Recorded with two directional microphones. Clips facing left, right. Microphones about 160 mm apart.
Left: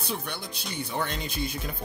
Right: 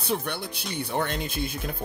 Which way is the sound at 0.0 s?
55° right (ahead or behind).